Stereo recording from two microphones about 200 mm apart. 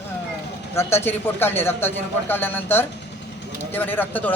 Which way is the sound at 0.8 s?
10° left (ahead or behind).